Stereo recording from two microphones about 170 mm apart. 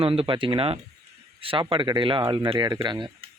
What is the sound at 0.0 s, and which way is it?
Speech, 35° right (ahead or behind).